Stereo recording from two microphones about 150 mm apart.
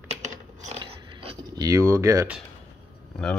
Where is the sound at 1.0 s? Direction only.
30° right (ahead or behind).